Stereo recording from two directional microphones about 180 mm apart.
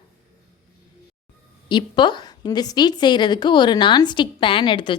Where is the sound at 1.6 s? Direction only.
25° left (ahead or behind).